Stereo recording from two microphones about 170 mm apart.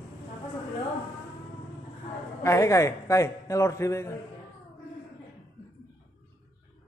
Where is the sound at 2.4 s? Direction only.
15° left (ahead or behind).